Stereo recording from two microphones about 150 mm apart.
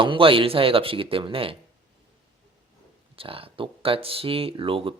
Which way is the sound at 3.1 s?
40° right (ahead or behind).